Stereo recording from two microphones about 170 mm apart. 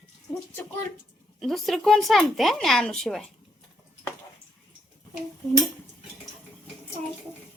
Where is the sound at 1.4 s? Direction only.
Centre (ahead or behind).